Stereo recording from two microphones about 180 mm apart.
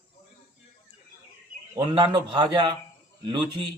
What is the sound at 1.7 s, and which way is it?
A man's voice, 25° right (ahead or behind).